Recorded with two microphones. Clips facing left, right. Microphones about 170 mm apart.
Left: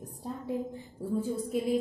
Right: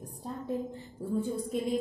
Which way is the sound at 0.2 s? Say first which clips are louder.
Even; 10° left (ahead or behind).